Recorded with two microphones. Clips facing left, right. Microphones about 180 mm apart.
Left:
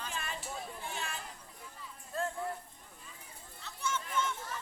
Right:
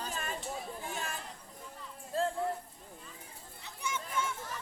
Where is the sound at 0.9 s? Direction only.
45° right (ahead or behind).